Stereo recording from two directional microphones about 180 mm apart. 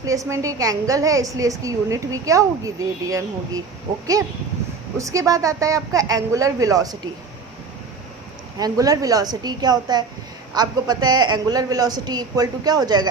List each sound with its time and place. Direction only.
0.0 s a woman's voice: 20° right (ahead or behind)
4.9 s a woman's voice: 20° right (ahead or behind)
8.5 s a woman's voice: 20° right (ahead or behind)